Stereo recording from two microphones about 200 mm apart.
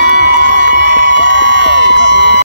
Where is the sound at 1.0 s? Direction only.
65° left (ahead or behind).